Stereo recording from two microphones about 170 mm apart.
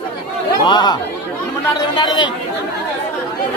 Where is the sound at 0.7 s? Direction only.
25° left (ahead or behind).